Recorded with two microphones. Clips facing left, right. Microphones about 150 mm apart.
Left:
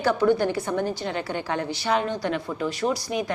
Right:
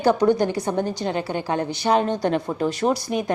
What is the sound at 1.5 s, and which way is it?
Speech, 30° right (ahead or behind).